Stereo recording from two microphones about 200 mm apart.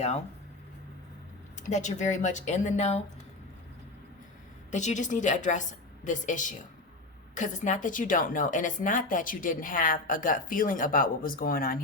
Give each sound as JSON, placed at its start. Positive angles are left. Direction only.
{"t": 1.6, "sound": "speech", "side_deg": 35}
{"t": 4.7, "sound": "a woman's voice", "side_deg": 35}